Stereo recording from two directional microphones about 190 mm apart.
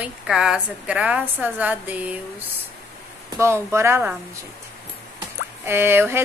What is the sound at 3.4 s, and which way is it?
Speech, 15° right (ahead or behind).